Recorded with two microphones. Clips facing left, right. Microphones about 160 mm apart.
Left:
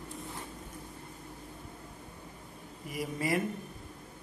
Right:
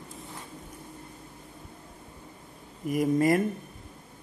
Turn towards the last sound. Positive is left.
turn(degrees=-50)  # may be behind; listen again after turning